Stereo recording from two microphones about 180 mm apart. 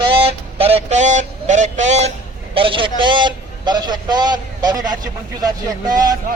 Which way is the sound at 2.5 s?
30° right (ahead or behind).